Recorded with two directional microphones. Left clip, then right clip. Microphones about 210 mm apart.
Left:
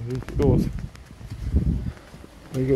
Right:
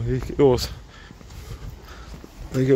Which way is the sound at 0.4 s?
50° right (ahead or behind).